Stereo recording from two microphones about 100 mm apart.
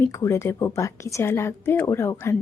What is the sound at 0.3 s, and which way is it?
A woman's voice, 25° left (ahead or behind).